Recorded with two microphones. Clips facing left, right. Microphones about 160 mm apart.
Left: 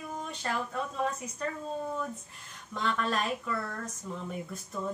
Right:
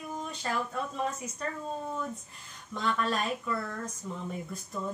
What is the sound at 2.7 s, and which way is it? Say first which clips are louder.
A woman's voice: even; centre (ahead or behind).